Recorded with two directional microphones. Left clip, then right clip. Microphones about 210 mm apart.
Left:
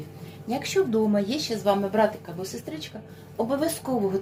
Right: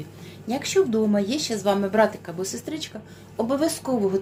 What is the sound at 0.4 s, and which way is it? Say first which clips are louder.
A woman's voice: right 3 dB; 15° right (ahead or behind).